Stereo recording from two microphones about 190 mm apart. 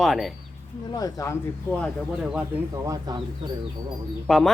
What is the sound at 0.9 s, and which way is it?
Speech, 20° left (ahead or behind).